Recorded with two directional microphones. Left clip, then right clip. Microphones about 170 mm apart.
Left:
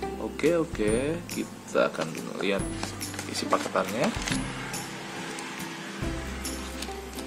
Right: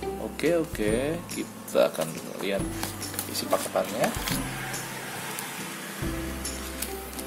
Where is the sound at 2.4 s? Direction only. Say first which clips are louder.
Left 1 dB; 20° left (ahead or behind).